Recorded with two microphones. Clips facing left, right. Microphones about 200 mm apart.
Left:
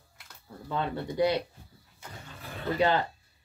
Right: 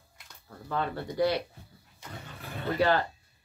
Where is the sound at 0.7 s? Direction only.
20° left (ahead or behind).